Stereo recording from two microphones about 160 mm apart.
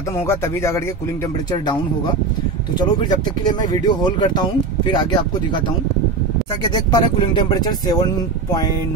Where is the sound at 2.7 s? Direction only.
25° left (ahead or behind).